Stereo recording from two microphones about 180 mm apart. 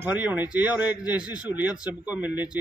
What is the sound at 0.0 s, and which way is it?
Speech, 10° right (ahead or behind).